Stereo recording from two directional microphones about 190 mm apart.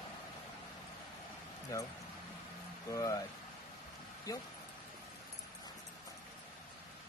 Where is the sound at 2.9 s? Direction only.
15° left (ahead or behind).